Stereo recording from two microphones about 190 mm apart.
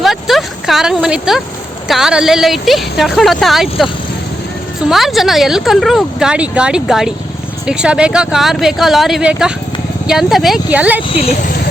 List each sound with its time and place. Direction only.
0.0 s speech: centre (ahead or behind)
4.9 s speech: centre (ahead or behind)
11.1 s speech: 35° left (ahead or behind)